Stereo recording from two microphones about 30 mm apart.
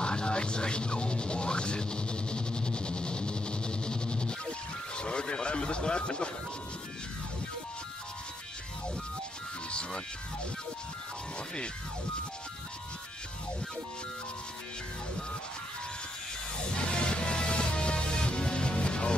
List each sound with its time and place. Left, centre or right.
0.0 s music: left
9.7 s music: left
16.7 s music: left